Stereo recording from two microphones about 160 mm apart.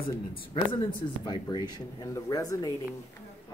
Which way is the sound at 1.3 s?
25° left (ahead or behind).